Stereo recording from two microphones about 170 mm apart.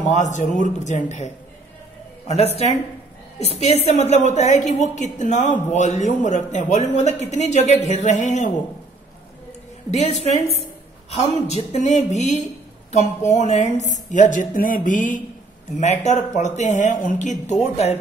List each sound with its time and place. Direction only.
0.0 s a woman's voice: 45° left (ahead or behind)
9.8 s a woman's voice: 40° left (ahead or behind)